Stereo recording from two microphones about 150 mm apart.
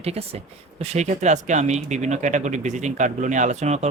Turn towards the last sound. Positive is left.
turn(degrees=-50)  # may be behind; listen again after turning